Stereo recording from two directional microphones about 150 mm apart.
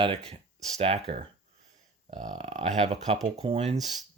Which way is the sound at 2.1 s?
55° right (ahead or behind).